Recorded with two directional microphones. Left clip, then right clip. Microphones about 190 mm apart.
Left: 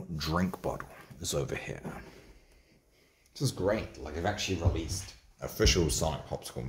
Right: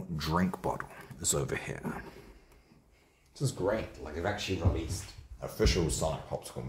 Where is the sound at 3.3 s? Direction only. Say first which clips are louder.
Left 1 dB; 35° left (ahead or behind).